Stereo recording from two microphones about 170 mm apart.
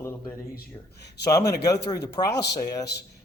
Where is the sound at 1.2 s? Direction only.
20° left (ahead or behind).